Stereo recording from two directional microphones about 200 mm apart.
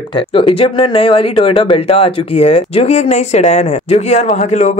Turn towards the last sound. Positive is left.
turn(degrees=35)  # may be behind; listen again after turning